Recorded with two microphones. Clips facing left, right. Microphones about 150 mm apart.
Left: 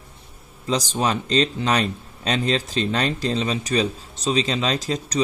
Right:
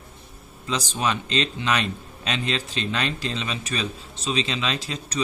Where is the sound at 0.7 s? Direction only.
35° left (ahead or behind).